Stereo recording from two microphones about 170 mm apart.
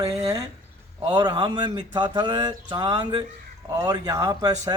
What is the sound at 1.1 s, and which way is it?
Speech, 25° right (ahead or behind).